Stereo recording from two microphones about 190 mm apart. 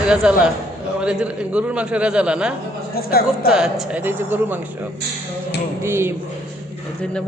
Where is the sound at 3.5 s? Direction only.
5° right (ahead or behind).